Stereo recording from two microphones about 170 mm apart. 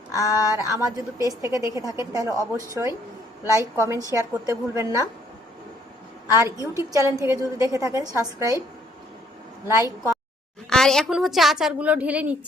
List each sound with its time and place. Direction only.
0.4 s a woman's voice: 20° right (ahead or behind)
6.3 s a woman's voice: 15° right (ahead or behind)
9.6 s a woman's voice: 15° right (ahead or behind)
10.7 s a woman's voice: 5° left (ahead or behind)